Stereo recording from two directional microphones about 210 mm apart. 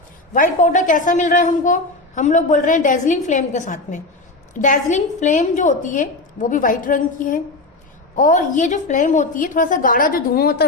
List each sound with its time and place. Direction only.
0.3 s a woman's voice: 35° left (ahead or behind)